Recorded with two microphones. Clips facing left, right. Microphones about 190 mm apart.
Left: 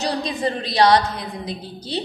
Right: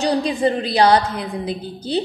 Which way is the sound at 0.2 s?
30° right (ahead or behind).